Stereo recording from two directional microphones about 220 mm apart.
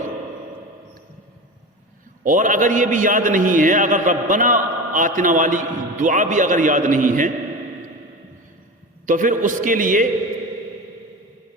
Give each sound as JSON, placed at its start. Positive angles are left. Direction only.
{"t": 2.2, "sound": "a man's voice", "side_deg": -35}
{"t": 9.0, "sound": "a man's voice", "side_deg": -35}